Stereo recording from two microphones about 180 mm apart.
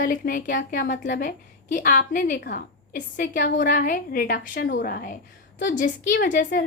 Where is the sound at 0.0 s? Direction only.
50° left (ahead or behind).